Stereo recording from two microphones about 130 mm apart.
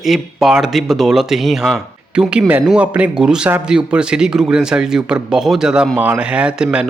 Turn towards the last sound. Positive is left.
turn(degrees=-5)  # may be behind; listen again after turning